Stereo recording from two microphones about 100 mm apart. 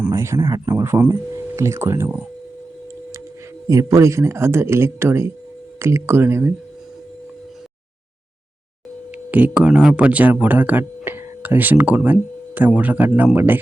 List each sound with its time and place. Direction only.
0.1 s speech: 30° right (ahead or behind)
3.7 s speech: 35° right (ahead or behind)
9.1 s speech: 15° right (ahead or behind)